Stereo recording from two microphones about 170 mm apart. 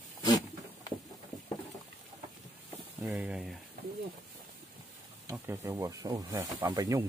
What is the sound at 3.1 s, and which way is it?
Speech, 5° right (ahead or behind).